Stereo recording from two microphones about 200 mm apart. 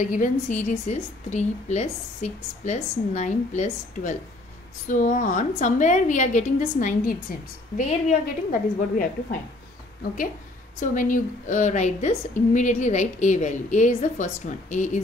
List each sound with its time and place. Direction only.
0.0 s a woman's voice: 40° left (ahead or behind)
10.8 s a woman's voice: 40° left (ahead or behind)